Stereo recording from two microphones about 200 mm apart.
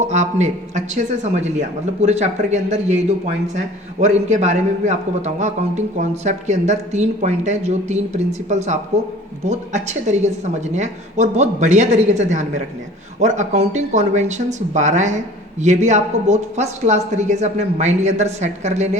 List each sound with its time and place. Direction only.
0.0 s a man's voice: 35° right (ahead or behind)
4.0 s a man's voice: 35° right (ahead or behind)